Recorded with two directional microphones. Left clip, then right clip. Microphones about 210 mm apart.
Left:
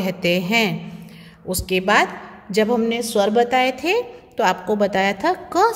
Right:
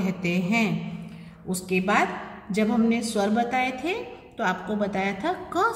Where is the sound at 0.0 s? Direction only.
40° left (ahead or behind).